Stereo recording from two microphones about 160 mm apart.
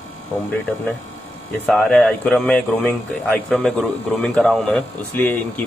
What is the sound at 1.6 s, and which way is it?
Speech, centre (ahead or behind).